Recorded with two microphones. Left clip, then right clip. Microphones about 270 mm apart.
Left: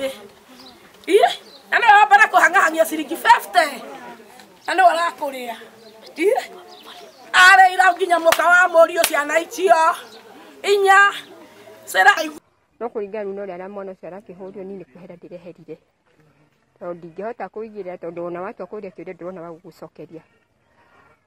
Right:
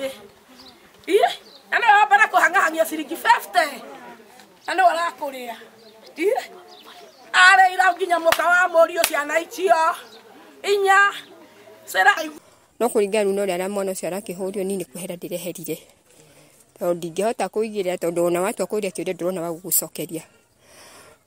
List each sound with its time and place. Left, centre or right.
0.0 s a sound: centre
4.6 s a woman's voice: centre
12.7 s speech: right
16.8 s speech: right
18.9 s speech: right